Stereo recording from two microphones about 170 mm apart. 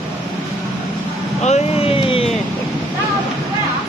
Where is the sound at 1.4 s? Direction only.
40° left (ahead or behind).